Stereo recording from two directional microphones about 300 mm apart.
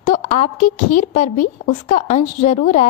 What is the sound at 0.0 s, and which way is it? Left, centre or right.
A woman's voice, left.